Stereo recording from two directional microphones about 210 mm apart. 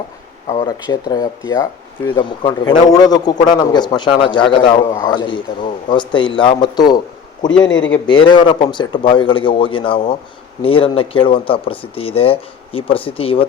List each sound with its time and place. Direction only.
0.6 s speech: 20° left (ahead or behind)
7.7 s a man's voice: 60° left (ahead or behind)
8.0 s speech: 20° left (ahead or behind)